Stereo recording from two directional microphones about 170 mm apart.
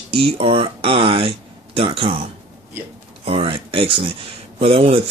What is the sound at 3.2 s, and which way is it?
Speech, 35° right (ahead or behind).